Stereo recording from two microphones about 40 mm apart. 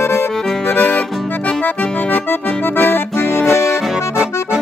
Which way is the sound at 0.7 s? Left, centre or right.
Left.